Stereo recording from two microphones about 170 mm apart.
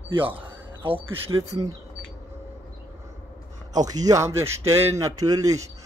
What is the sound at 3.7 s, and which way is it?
A man's voice, 20° right (ahead or behind).